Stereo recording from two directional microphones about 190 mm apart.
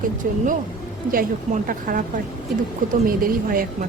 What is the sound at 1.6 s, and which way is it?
Speech, 45° right (ahead or behind).